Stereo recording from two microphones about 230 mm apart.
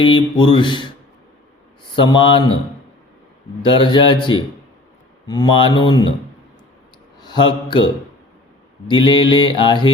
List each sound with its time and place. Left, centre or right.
0.0 s mantra: left
2.0 s mantra: left
3.6 s mantra: left
7.2 s speech: centre
8.9 s mantra: left